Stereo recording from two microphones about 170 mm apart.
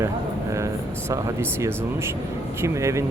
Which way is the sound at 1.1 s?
15° right (ahead or behind).